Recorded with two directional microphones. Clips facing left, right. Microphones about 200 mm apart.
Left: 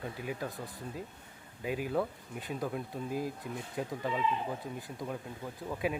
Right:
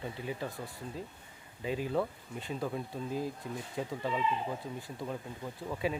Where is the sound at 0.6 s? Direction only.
20° left (ahead or behind).